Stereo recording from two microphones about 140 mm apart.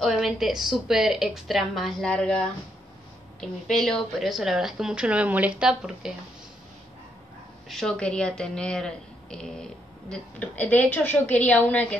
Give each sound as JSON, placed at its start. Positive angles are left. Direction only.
{"t": 0.0, "sound": "a woman's voice", "side_deg": 0}
{"t": 7.6, "sound": "a woman's voice", "side_deg": 0}